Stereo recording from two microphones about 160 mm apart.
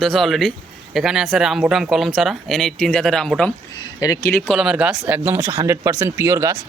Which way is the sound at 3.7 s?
25° left (ahead or behind).